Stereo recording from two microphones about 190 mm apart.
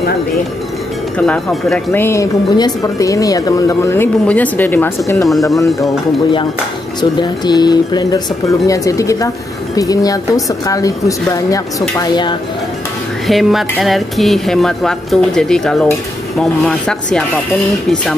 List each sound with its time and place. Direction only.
1.1 s speech: 5° left (ahead or behind)
1.9 s speech: 15° left (ahead or behind)
5.3 s speech: centre (ahead or behind)
7.0 s speech: 20° left (ahead or behind)
13.3 s speech: centre (ahead or behind)